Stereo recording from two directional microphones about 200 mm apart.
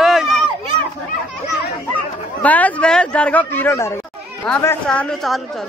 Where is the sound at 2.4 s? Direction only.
5° left (ahead or behind).